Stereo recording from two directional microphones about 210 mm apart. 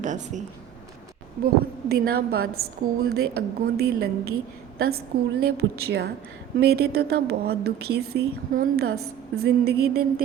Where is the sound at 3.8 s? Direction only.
50° right (ahead or behind).